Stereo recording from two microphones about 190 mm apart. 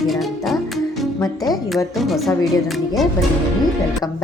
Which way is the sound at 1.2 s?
20° left (ahead or behind).